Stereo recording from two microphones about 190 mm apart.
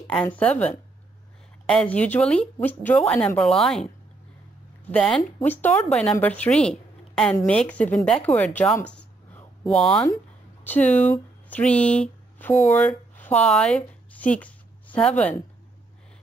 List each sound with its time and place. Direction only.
0.0 s a woman's voice: 5° left (ahead or behind)
4.9 s speech: 5° left (ahead or behind)
8.9 s a sound: 5° left (ahead or behind)
10.6 s speech: 10° left (ahead or behind)